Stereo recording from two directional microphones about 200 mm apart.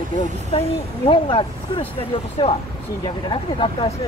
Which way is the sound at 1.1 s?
25° left (ahead or behind).